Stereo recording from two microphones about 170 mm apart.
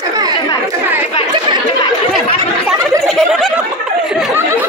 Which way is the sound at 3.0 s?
Centre (ahead or behind).